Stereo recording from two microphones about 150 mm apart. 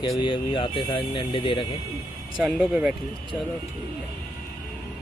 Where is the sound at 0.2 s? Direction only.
35° left (ahead or behind).